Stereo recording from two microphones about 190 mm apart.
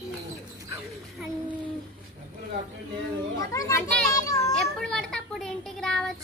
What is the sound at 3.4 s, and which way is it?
Speech, 15° left (ahead or behind).